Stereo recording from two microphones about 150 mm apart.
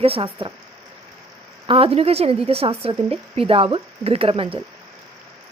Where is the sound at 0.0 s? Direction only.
40° right (ahead or behind).